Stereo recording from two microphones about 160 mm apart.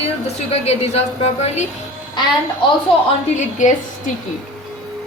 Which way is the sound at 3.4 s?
50° left (ahead or behind).